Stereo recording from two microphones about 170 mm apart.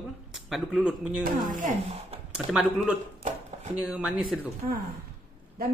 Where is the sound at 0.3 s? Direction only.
Centre (ahead or behind).